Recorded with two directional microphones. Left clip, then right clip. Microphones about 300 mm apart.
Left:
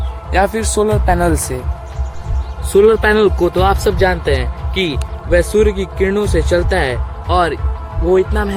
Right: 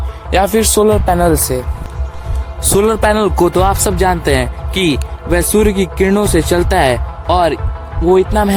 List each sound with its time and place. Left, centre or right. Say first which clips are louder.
0.3 s speech: right 3 dB; right
2.7 s a man's voice: left 2 dB; right